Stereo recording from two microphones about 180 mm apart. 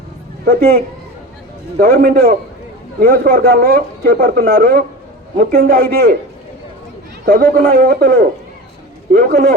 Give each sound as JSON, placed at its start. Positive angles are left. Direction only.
{"t": 0.4, "sound": "a man's voice", "side_deg": -55}
{"t": 1.8, "sound": "a man's voice", "side_deg": -55}
{"t": 7.5, "sound": "a man's voice", "side_deg": -55}